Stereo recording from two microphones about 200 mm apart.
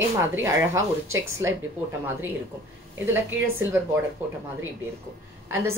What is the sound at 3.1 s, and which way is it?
Speech, 10° right (ahead or behind).